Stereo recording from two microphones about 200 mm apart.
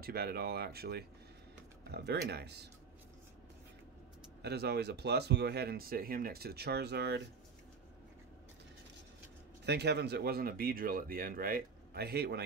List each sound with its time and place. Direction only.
0.0 s speech: 50° right (ahead or behind)
4.4 s speech: 55° right (ahead or behind)
9.7 s speech: 55° right (ahead or behind)